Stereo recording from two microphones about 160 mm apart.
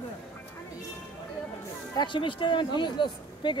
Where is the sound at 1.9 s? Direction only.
30° left (ahead or behind).